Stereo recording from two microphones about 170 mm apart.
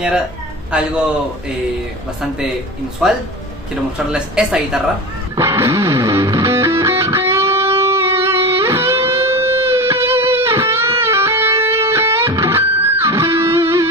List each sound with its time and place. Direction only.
0.7 s a man's voice: 5° right (ahead or behind)
3.0 s a woman's voice: 5° right (ahead or behind)
5.3 s music: 15° right (ahead or behind)
9.2 s guitar: 15° right (ahead or behind)
11.0 s music: 15° right (ahead or behind)